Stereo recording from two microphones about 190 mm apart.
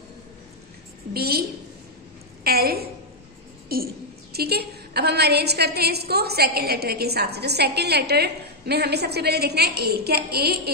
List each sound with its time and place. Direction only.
1.1 s a woman's voice: 55° right (ahead or behind)
2.4 s a woman's voice: 55° right (ahead or behind)